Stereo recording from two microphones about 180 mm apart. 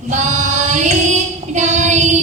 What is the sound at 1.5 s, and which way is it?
Child singing, 40° right (ahead or behind).